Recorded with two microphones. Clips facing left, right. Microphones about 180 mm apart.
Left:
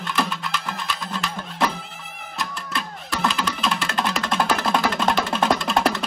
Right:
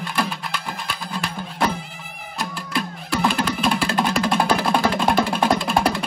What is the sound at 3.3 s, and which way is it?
Music, 55° right (ahead or behind).